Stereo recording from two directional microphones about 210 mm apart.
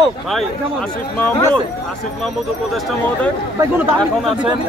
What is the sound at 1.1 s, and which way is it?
Speech, 5° left (ahead or behind).